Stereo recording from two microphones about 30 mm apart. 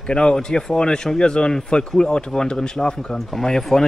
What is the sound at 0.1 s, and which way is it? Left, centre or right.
Speech, left.